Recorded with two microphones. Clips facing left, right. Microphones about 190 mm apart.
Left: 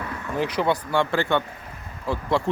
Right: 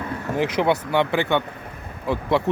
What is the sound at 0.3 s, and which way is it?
Speech, 20° right (ahead or behind).